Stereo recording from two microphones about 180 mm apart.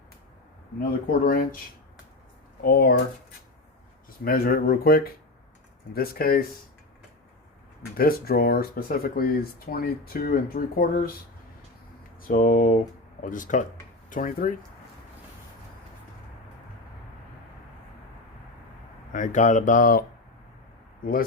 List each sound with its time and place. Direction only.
1.2 s speech: 55° left (ahead or behind)
2.6 s speech: 60° left (ahead or behind)
4.2 s speech: 55° left (ahead or behind)
7.9 s speech: 55° left (ahead or behind)
12.3 s speech: 50° left (ahead or behind)
19.1 s speech: 45° left (ahead or behind)